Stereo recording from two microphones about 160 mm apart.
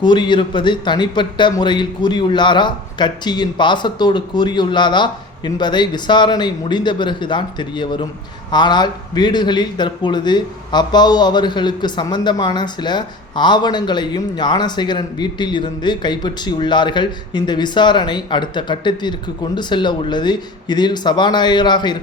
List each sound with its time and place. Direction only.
0.0 s speech: 30° left (ahead or behind)